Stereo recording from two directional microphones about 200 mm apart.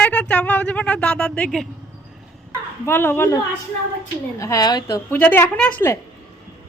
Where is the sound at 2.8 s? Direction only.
10° left (ahead or behind).